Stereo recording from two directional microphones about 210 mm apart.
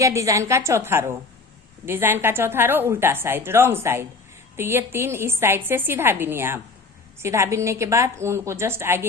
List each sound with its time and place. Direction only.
0.0 s a woman's voice: 15° right (ahead or behind)